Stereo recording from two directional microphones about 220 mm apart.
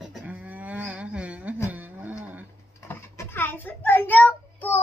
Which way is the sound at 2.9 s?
10° left (ahead or behind).